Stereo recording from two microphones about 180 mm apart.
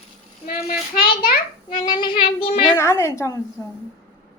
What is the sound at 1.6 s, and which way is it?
Child singing, 25° left (ahead or behind).